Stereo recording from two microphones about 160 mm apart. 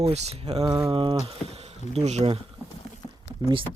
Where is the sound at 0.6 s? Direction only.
25° right (ahead or behind).